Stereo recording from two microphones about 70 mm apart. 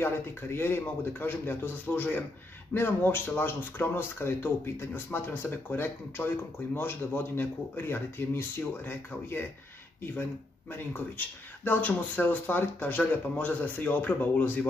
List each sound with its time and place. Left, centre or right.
0.0 s speech: left
10.7 s speech: left